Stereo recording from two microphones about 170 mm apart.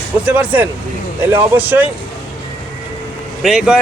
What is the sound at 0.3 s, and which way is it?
A man's voice, 10° right (ahead or behind).